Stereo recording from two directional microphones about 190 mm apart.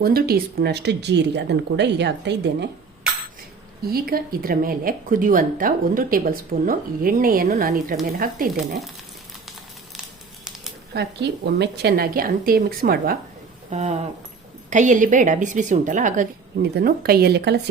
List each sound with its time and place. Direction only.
0.0 s speech: 50° right (ahead or behind)
3.8 s a woman's voice: 50° right (ahead or behind)
10.9 s a woman's voice: 60° right (ahead or behind)
13.7 s a woman's voice: 35° right (ahead or behind)
16.7 s speech: 50° right (ahead or behind)